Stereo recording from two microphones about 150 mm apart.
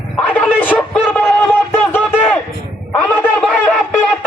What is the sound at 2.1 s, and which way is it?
Speech, 5° right (ahead or behind).